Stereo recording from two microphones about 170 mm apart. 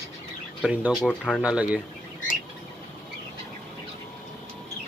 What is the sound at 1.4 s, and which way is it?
Speech, 5° right (ahead or behind).